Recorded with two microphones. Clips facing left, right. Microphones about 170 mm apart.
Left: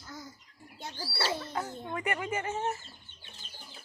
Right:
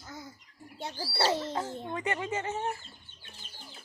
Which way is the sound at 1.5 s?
25° right (ahead or behind).